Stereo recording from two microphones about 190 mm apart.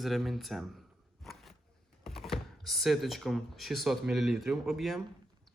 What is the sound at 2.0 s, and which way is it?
Speech, centre (ahead or behind).